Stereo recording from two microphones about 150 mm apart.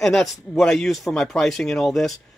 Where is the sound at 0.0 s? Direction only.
Centre (ahead or behind).